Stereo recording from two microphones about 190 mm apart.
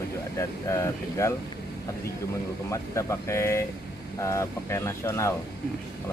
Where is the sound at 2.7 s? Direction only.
15° left (ahead or behind).